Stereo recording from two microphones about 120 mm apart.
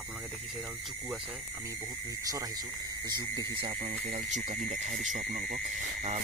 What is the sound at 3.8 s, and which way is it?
Speech, 75° right (ahead or behind).